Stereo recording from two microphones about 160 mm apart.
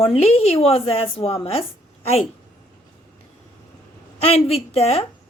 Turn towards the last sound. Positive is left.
turn(degrees=40)  # may be behind; listen again after turning